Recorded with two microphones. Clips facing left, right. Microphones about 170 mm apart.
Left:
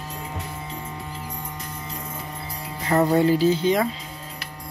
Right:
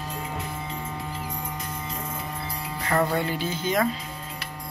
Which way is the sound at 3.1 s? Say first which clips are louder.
Left 9 dB; 35° left (ahead or behind).